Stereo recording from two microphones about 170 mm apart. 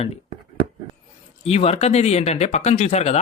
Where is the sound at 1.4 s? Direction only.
35° left (ahead or behind).